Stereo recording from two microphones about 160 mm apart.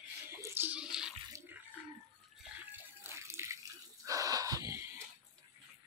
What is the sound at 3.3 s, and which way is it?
Water, 15° right (ahead or behind).